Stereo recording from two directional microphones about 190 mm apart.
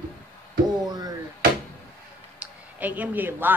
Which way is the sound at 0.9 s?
20° right (ahead or behind).